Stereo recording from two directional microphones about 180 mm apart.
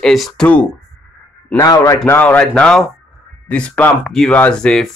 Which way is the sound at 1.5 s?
15° left (ahead or behind).